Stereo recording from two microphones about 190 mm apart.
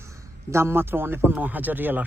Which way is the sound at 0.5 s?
15° right (ahead or behind).